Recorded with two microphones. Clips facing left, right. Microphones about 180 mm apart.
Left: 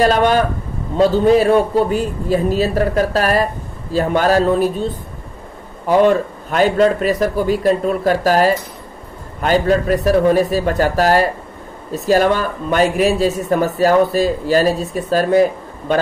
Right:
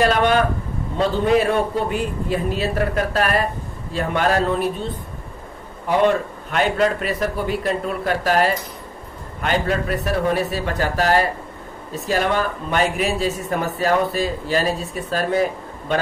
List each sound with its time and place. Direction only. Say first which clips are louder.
0.0 s speech: left 3 dB; 40° left (ahead or behind)
6.5 s speech: left 6 dB; 35° left (ahead or behind)